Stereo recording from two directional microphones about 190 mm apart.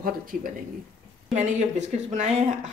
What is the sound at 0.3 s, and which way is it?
Speech, 45° right (ahead or behind).